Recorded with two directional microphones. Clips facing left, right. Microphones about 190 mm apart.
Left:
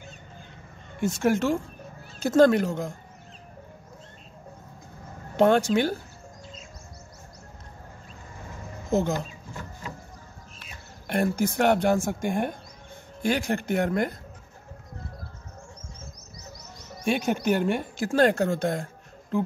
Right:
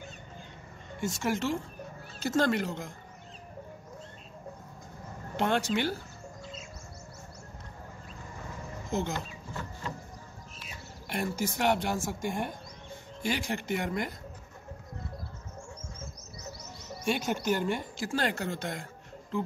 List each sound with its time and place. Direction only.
1.0 s speech: 55° left (ahead or behind)
5.4 s speech: 45° left (ahead or behind)
8.9 s speech: 40° left (ahead or behind)
11.1 s speech: 55° left (ahead or behind)
17.1 s speech: 55° left (ahead or behind)